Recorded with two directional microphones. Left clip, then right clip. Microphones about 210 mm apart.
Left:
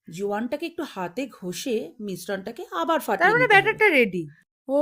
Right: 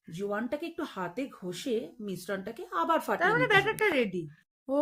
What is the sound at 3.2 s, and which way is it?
Speech, 30° left (ahead or behind).